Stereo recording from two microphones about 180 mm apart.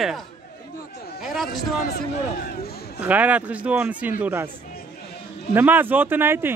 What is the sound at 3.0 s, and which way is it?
A man's voice, 10° right (ahead or behind).